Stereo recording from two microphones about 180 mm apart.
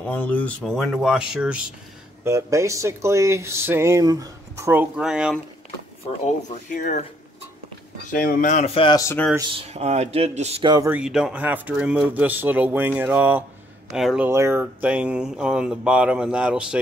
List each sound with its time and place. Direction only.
0.1 s speech: 10° left (ahead or behind)
2.2 s speech: 15° right (ahead or behind)
6.2 s speech: 40° left (ahead or behind)
8.1 s speech: 50° left (ahead or behind); by 8.9 s 35° left (ahead or behind)
8.9 s speech: 15° left (ahead or behind)
9.5 s speech: 35° right (ahead or behind)
10.6 s speech: 25° right (ahead or behind)
10.9 s speech: 5° right (ahead or behind)